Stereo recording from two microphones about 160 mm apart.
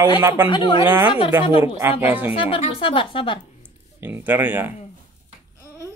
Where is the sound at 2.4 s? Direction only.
35° left (ahead or behind).